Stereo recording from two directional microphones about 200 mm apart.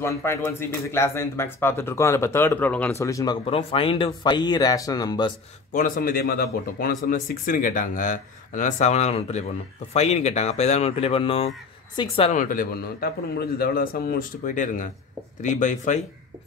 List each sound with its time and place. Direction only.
0.0 s speech: 15° left (ahead or behind)
5.7 s speech: 40° left (ahead or behind)